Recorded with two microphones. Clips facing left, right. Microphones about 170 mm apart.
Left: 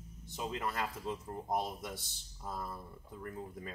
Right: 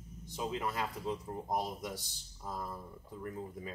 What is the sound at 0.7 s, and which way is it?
Speech, centre (ahead or behind).